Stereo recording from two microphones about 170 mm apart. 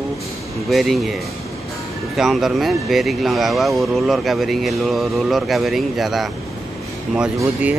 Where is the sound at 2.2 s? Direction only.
Centre (ahead or behind).